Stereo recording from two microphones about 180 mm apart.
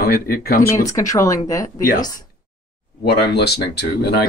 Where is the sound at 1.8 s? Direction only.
50° left (ahead or behind).